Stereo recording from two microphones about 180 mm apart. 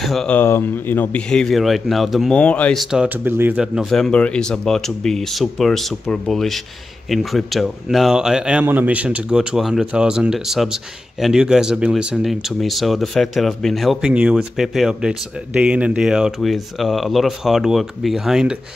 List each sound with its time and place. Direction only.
0.0 s a man's voice: centre (ahead or behind)